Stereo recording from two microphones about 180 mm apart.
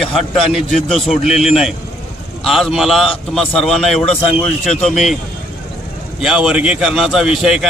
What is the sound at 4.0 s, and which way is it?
Speech, 35° left (ahead or behind).